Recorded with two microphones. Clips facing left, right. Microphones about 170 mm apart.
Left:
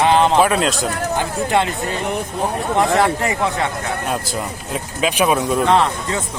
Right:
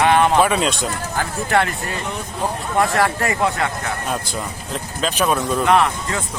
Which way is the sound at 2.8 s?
20° left (ahead or behind).